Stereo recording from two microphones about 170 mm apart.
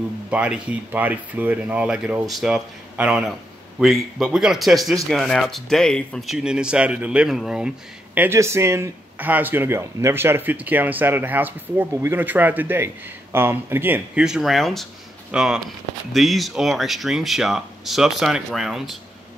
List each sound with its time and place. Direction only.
0.3 s speech: 5° right (ahead or behind)